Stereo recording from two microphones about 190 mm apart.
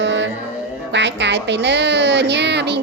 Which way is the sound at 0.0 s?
70° right (ahead or behind).